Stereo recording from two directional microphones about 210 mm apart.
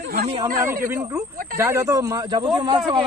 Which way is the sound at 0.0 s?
50° right (ahead or behind).